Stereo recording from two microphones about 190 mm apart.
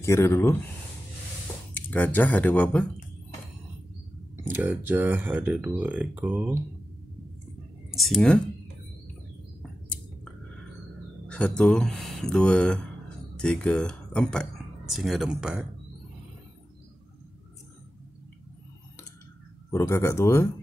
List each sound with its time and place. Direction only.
0.0 s speech: 15° left (ahead or behind)
1.7 s speech: 10° left (ahead or behind)
4.4 s speech: 10° right (ahead or behind)
7.9 s speech: centre (ahead or behind)
9.6 s a sound: 5° left (ahead or behind)
11.2 s speech: 5° left (ahead or behind)
19.7 s speech: 15° left (ahead or behind)